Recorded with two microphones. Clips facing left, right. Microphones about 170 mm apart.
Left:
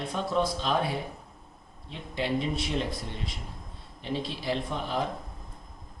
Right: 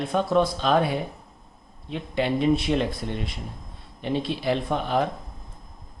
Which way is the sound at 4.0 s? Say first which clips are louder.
Right 6 dB; 60° right (ahead or behind).